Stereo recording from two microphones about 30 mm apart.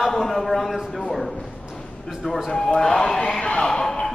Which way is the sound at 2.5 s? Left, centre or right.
Left.